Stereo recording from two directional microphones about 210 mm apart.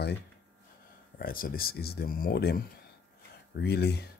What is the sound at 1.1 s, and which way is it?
Speech, 45° left (ahead or behind).